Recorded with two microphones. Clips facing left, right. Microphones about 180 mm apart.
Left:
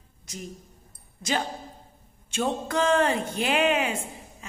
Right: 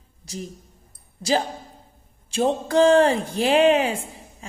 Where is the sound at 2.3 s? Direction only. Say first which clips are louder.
Right 7 dB; 35° right (ahead or behind).